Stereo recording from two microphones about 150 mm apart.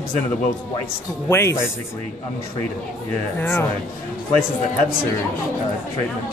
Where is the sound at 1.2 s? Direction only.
15° left (ahead or behind).